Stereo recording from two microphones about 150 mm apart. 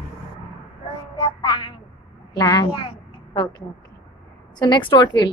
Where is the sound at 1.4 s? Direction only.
30° left (ahead or behind).